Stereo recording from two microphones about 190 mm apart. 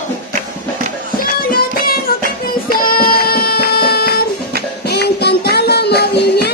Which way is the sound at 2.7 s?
50° left (ahead or behind).